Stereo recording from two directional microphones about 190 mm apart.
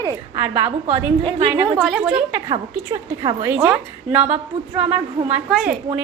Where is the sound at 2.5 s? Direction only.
25° right (ahead or behind).